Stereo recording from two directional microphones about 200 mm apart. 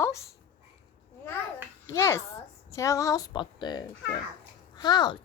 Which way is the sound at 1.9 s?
15° left (ahead or behind).